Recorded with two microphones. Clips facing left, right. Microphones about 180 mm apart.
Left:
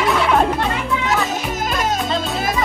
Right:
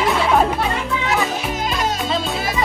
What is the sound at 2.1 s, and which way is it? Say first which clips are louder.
Music: even; centre (ahead or behind).